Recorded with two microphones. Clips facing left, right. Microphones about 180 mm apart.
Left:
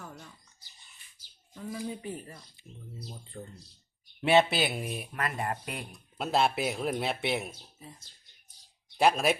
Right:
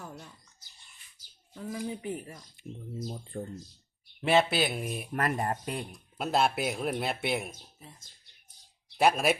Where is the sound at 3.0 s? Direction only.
45° right (ahead or behind).